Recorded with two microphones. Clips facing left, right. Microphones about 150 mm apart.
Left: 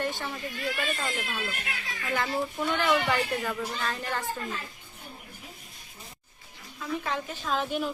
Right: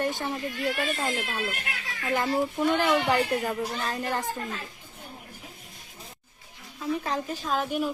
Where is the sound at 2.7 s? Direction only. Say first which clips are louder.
Right 1 dB; 40° right (ahead or behind).